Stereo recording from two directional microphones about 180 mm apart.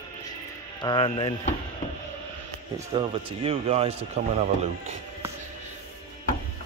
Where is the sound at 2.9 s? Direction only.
30° right (ahead or behind).